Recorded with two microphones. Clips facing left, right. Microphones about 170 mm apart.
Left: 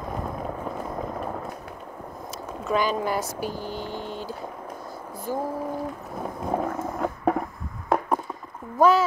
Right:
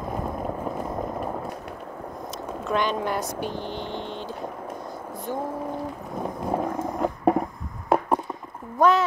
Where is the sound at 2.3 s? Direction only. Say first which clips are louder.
Left 1 dB; centre (ahead or behind).